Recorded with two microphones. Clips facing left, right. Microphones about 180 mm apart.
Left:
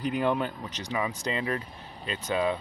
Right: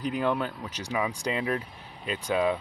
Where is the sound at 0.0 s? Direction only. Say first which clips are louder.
Left 1 dB; centre (ahead or behind).